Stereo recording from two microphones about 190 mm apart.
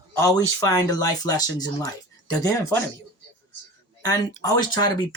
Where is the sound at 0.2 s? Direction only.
20° left (ahead or behind).